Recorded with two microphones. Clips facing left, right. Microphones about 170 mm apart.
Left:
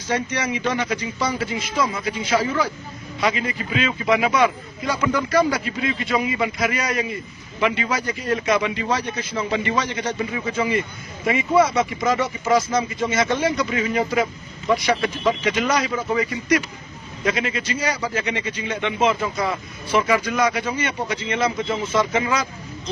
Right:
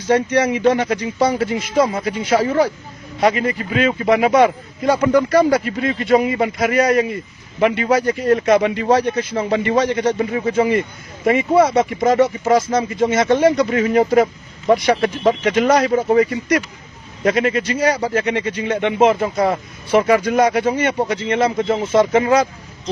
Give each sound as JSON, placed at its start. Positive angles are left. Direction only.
{"t": 0.1, "sound": "speech", "side_deg": -55}
{"t": 5.0, "sound": "speech", "side_deg": -40}
{"t": 11.7, "sound": "speech", "side_deg": -55}
{"t": 12.5, "sound": "speech", "side_deg": -35}
{"t": 13.0, "sound": "speech", "side_deg": -55}